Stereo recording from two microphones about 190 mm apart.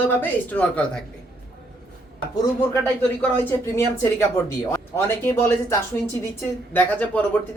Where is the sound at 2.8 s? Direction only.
10° left (ahead or behind).